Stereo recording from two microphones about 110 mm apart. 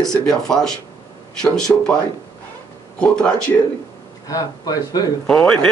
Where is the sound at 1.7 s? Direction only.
15° left (ahead or behind).